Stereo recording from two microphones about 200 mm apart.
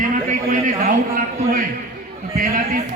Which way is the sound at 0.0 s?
40° right (ahead or behind).